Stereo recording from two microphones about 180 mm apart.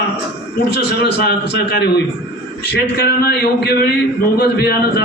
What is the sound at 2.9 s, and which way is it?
A man's voice, 60° left (ahead or behind).